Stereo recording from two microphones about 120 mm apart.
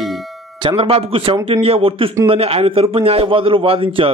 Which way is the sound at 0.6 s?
50° right (ahead or behind).